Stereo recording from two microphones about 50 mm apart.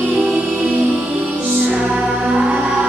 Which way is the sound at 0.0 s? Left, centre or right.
Right.